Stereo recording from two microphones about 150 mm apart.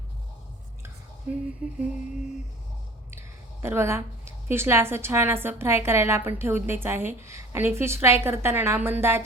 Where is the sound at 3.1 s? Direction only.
15° right (ahead or behind).